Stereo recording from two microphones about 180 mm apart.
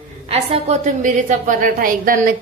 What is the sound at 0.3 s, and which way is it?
A woman's voice, 35° right (ahead or behind).